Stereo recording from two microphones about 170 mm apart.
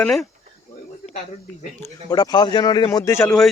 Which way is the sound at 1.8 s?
20° left (ahead or behind).